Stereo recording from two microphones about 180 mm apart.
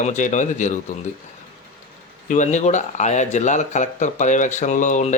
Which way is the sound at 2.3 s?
40° left (ahead or behind).